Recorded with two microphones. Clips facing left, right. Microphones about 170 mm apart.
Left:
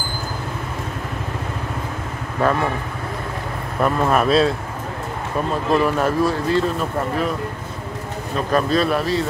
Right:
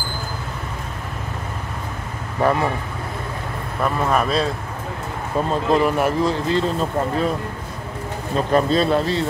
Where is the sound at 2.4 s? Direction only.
15° right (ahead or behind).